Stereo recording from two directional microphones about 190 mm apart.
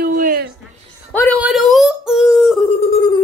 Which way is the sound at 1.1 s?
10° left (ahead or behind).